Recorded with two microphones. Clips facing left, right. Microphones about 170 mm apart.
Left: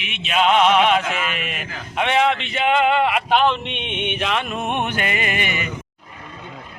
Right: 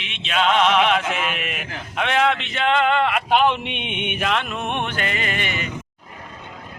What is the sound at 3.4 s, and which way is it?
Music, 10° right (ahead or behind).